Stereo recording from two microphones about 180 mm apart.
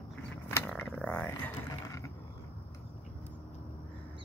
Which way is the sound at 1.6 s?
20° left (ahead or behind).